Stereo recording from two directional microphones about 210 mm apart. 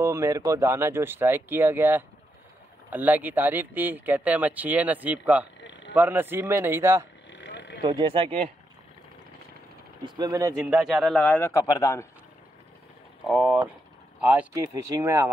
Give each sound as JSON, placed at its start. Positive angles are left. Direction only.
{"t": 0.0, "sound": "speech", "side_deg": -15}
{"t": 5.6, "sound": "a sound", "side_deg": 60}
{"t": 5.9, "sound": "speech", "side_deg": -10}
{"t": 7.2, "sound": "a sound", "side_deg": 55}
{"t": 7.8, "sound": "speech", "side_deg": -20}
{"t": 10.0, "sound": "speech", "side_deg": -20}
{"t": 10.8, "sound": "a man's voice", "side_deg": 0}
{"t": 13.3, "sound": "speech", "side_deg": -5}